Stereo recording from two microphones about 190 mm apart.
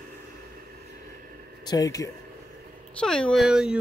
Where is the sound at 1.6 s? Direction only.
20° left (ahead or behind).